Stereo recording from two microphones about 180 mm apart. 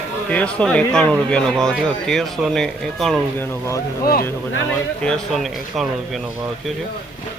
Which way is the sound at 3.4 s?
15° left (ahead or behind).